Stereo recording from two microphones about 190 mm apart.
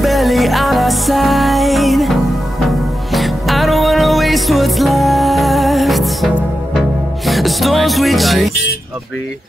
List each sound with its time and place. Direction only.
0.0 s music: centre (ahead or behind)